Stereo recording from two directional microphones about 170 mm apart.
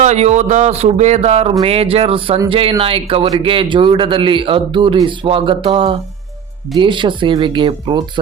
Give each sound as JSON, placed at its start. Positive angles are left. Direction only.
{"t": 0.0, "sound": "speech", "side_deg": -40}